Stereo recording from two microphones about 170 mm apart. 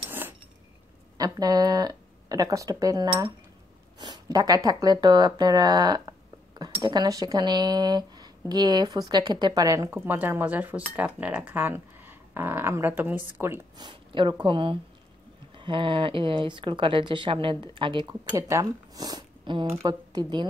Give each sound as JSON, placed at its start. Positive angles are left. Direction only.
{"t": 1.1, "sound": "speech", "side_deg": -20}
{"t": 13.7, "sound": "speech", "side_deg": -30}